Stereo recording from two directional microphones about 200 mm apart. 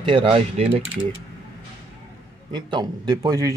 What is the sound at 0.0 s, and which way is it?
Speech, 25° right (ahead or behind).